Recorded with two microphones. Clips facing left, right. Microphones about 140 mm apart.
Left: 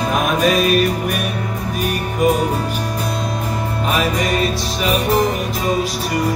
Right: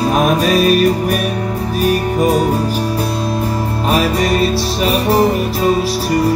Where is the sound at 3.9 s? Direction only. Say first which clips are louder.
Right 5 dB; 35° right (ahead or behind).